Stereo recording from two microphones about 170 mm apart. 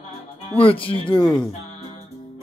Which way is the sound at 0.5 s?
30° left (ahead or behind).